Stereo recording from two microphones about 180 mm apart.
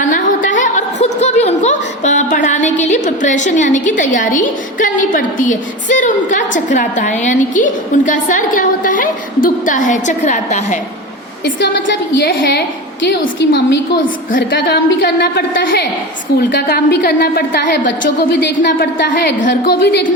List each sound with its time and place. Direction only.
0.0 s a woman's voice: 45° left (ahead or behind)
11.4 s a woman's voice: 80° left
19.4 s a woman's voice: 60° left (ahead or behind)